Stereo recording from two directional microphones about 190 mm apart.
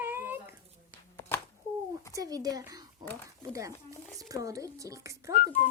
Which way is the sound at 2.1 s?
20° right (ahead or behind).